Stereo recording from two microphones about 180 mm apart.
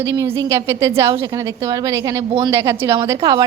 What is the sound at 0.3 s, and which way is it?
A woman's voice, 15° right (ahead or behind).